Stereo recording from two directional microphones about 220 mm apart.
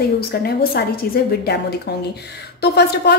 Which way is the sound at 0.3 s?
45° left (ahead or behind).